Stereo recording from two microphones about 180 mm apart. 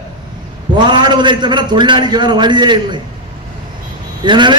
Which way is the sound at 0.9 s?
25° right (ahead or behind).